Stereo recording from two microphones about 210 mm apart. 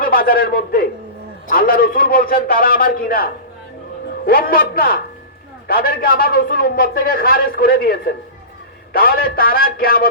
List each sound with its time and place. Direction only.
0.0 s a man's voice: 45° left (ahead or behind)
4.3 s a man's voice: 45° left (ahead or behind)